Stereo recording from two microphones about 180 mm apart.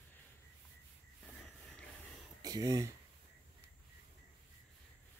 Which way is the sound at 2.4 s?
20° right (ahead or behind).